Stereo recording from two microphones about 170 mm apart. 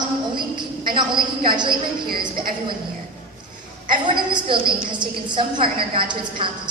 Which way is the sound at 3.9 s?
30° right (ahead or behind).